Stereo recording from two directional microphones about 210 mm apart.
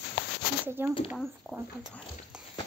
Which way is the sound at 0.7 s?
10° right (ahead or behind).